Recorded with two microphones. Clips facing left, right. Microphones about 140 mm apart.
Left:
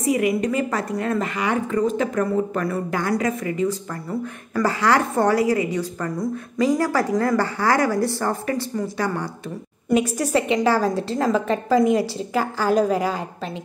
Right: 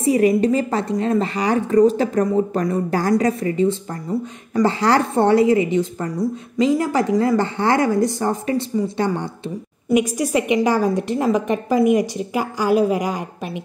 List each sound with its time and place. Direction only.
0.0 s a woman's voice: 30° right (ahead or behind)
9.9 s a woman's voice: 10° right (ahead or behind)